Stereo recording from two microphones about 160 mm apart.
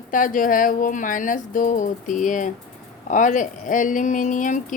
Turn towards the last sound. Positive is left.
turn(degrees=55)  # may be behind; listen again after turning